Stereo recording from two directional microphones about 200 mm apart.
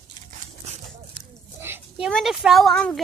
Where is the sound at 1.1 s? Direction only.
15° right (ahead or behind); by 3.0 s 5° left (ahead or behind).